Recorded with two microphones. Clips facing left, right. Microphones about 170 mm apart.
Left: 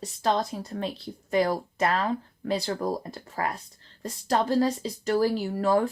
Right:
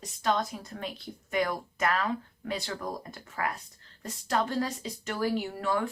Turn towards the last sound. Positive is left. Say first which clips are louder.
# left 6 dB
turn(degrees=35)  # may be behind; listen again after turning